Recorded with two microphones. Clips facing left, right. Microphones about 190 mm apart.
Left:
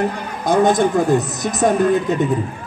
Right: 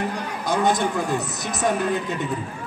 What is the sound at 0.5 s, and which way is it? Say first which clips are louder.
A man's voice: left 7 dB; 45° left (ahead or behind).